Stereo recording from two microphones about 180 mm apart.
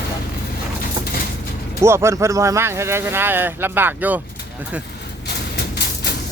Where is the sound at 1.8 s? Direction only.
15° right (ahead or behind).